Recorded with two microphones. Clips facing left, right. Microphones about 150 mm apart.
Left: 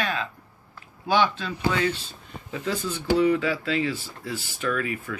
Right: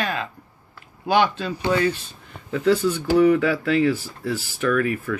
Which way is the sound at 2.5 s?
65° right (ahead or behind).